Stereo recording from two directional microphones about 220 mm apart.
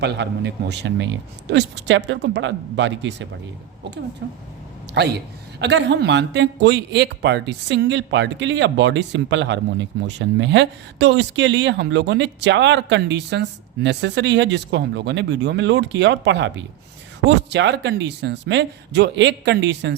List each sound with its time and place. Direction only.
0.0 s a man's voice: 50° right (ahead or behind)